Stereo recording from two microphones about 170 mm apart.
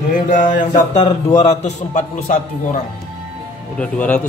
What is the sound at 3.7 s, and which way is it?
Speech, 5° left (ahead or behind).